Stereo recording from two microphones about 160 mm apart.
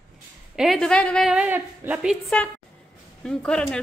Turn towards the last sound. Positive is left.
turn(degrees=5)  # may be behind; listen again after turning